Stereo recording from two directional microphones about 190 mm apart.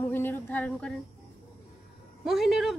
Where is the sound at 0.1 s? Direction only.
10° left (ahead or behind).